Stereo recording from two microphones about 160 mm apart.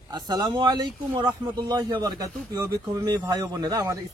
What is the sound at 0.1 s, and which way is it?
Speech, 25° right (ahead or behind).